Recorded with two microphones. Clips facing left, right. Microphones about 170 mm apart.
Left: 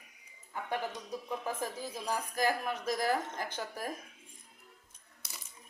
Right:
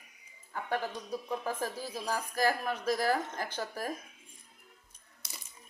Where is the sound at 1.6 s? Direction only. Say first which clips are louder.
Right 2 dB; 20° left (ahead or behind).